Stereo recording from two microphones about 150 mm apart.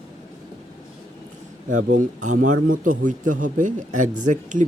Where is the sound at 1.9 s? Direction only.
60° right (ahead or behind).